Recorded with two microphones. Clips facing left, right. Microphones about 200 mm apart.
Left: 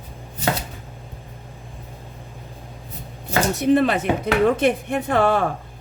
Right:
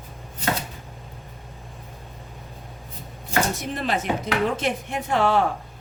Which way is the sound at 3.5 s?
60° left (ahead or behind).